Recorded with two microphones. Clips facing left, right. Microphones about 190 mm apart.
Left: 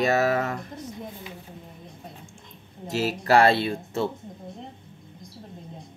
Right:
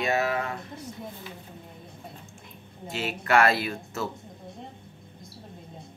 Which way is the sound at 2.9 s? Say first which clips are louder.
Left 4 dB; 40° left (ahead or behind).